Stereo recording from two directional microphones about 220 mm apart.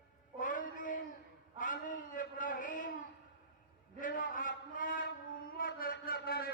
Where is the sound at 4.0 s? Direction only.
35° left (ahead or behind).